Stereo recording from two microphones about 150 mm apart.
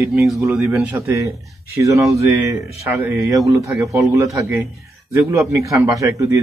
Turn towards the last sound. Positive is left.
turn(degrees=-20)  # may be behind; listen again after turning